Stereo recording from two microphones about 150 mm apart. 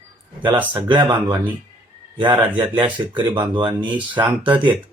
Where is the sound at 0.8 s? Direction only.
30° right (ahead or behind).